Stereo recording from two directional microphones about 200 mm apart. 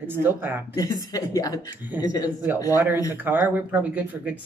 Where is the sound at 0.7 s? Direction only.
20° left (ahead or behind).